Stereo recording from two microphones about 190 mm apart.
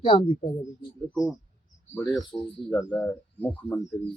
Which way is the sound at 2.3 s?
Centre (ahead or behind).